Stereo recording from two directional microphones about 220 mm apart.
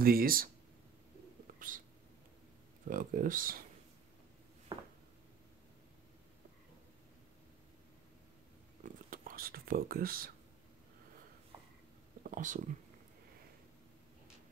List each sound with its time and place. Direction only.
0.0 s speech: 40° right (ahead or behind)
1.5 s cat: 40° right (ahead or behind)
2.9 s speech: 40° right (ahead or behind)
4.7 s a sound: 20° right (ahead or behind)
8.8 s a sound: 40° right (ahead or behind)
12.2 s whispering: 35° right (ahead or behind)